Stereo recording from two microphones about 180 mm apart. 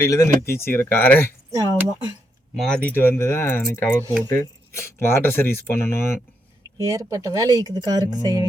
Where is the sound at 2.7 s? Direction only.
10° left (ahead or behind).